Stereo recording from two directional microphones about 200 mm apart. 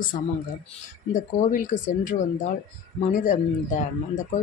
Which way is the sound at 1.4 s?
40° left (ahead or behind).